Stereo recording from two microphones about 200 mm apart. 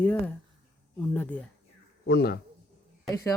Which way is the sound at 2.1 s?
55° left (ahead or behind).